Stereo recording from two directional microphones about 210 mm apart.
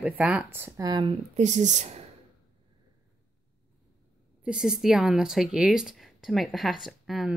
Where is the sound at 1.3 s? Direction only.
35° right (ahead or behind).